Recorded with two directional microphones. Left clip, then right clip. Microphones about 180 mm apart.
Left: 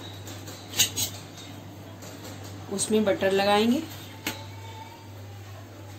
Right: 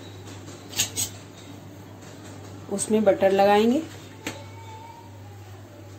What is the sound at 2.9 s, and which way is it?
Speech, 40° right (ahead or behind).